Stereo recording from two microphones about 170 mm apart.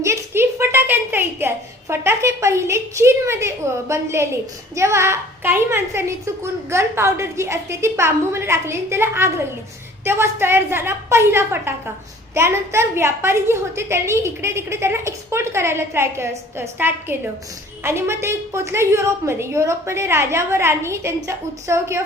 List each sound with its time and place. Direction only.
0.0 s a woman's voice: 15° right (ahead or behind)